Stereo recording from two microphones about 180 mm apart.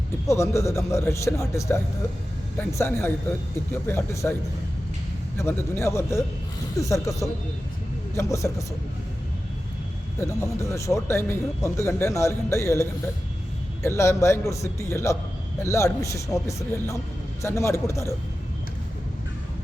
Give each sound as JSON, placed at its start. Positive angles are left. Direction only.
{"t": 0.3, "sound": "speech", "side_deg": 15}
{"t": 5.4, "sound": "speech", "side_deg": 15}
{"t": 10.2, "sound": "speech", "side_deg": 15}